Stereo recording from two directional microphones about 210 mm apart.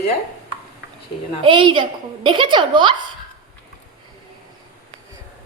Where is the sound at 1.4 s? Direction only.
25° right (ahead or behind).